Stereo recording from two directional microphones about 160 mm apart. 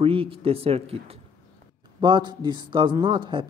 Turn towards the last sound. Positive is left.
turn(degrees=-30)  # may be behind; listen again after turning